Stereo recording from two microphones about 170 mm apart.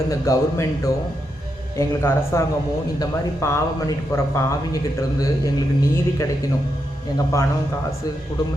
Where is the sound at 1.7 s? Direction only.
15° left (ahead or behind).